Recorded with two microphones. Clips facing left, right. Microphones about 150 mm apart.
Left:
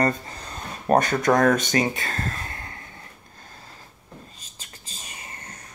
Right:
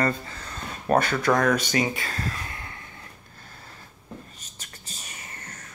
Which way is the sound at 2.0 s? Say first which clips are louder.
Left 2 dB; 45° left (ahead or behind).